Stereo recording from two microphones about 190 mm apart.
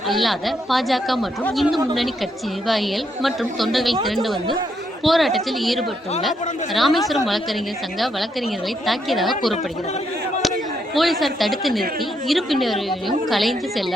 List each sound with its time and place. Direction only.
0.1 s speech: centre (ahead or behind)
10.9 s speech: centre (ahead or behind)